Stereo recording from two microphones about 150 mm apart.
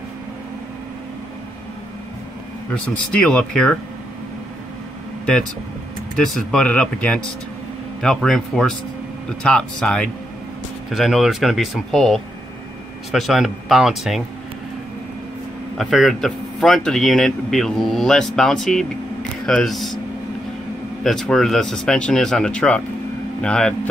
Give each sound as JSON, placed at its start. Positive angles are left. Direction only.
{"t": 2.7, "sound": "speech", "side_deg": 10}
{"t": 6.1, "sound": "speech", "side_deg": 5}
{"t": 15.8, "sound": "speech", "side_deg": 0}
{"t": 21.0, "sound": "speech", "side_deg": 5}